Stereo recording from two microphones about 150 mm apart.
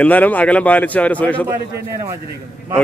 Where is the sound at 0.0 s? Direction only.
10° left (ahead or behind).